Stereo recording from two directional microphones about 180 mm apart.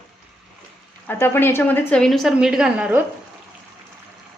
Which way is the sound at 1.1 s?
10° left (ahead or behind).